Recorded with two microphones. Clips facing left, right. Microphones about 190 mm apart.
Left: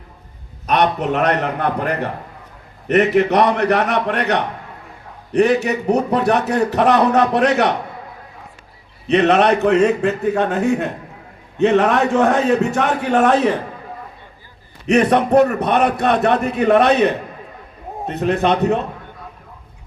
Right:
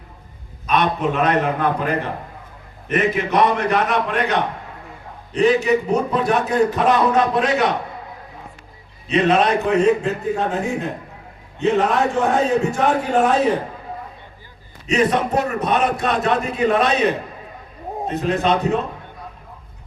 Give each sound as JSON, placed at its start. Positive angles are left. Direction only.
{"t": 0.7, "sound": "a man's voice", "side_deg": 70}
{"t": 2.9, "sound": "a man's voice", "side_deg": 65}
{"t": 9.0, "sound": "a man's voice", "side_deg": 65}
{"t": 14.8, "sound": "a man's voice", "side_deg": 60}